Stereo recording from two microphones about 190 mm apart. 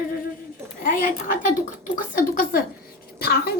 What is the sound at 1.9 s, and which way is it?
Speech, 45° left (ahead or behind).